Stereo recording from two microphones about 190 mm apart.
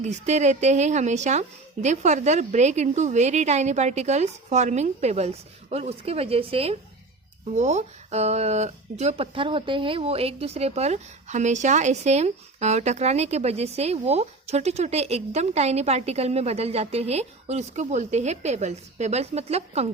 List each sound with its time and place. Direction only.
0.0 s speech: 35° right (ahead or behind)